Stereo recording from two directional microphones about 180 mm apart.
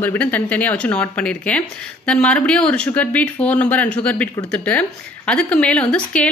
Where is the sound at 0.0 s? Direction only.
10° left (ahead or behind).